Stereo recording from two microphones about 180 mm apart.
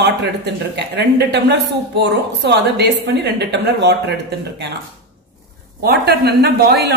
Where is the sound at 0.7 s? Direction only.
70° right (ahead or behind).